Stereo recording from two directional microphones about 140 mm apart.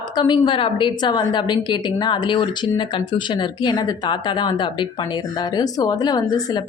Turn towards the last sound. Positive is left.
turn(degrees=30)  # may be behind; listen again after turning